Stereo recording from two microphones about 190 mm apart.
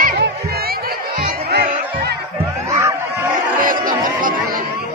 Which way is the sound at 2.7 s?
15° right (ahead or behind).